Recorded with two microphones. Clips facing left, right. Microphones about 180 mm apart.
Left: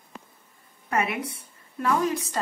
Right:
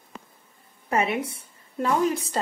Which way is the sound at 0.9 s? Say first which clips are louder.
Right 2 dB; 30° right (ahead or behind).